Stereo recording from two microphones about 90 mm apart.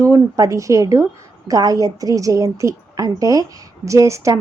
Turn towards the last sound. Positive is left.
turn(degrees=-35)  # may be behind; listen again after turning